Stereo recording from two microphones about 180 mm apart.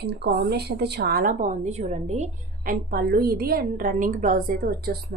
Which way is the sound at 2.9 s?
60° right (ahead or behind).